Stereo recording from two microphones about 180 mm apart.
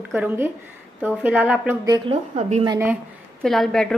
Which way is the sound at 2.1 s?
35° right (ahead or behind).